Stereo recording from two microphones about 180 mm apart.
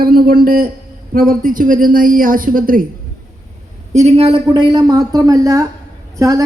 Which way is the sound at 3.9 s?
35° right (ahead or behind).